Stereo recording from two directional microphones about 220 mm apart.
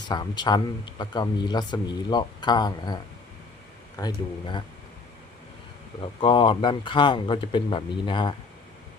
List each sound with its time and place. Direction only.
0.1 s speech: 20° left (ahead or behind)
6.0 s speech: 25° left (ahead or behind)